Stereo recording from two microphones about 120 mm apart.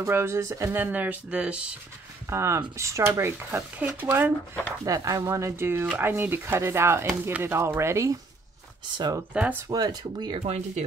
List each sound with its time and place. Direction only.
0.0 s speech: 20° right (ahead or behind)
2.2 s speech: 20° right (ahead or behind)
4.8 s speech: 30° right (ahead or behind)
8.9 s speech: 40° right (ahead or behind)
9.3 s speech: 15° right (ahead or behind)
9.7 s speech: 35° right (ahead or behind)
10.4 s speech: 70° right (ahead or behind)